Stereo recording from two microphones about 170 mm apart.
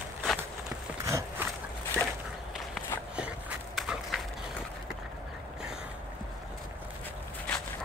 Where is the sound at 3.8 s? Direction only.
Centre (ahead or behind).